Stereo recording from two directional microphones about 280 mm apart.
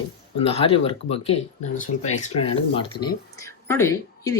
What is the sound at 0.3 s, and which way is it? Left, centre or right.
Speech, centre.